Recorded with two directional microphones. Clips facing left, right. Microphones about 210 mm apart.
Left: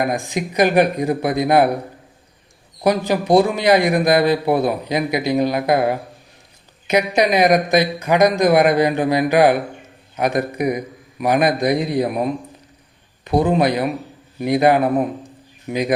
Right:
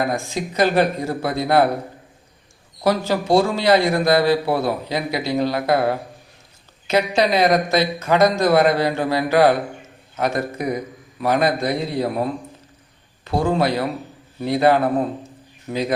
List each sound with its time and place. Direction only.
0.0 s speech: 15° left (ahead or behind)
2.8 s speech: 15° left (ahead or behind)